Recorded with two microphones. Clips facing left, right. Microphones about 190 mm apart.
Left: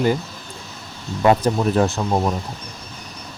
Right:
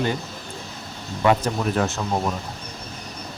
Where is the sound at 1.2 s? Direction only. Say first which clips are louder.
Left 4 dB; 35° left (ahead or behind).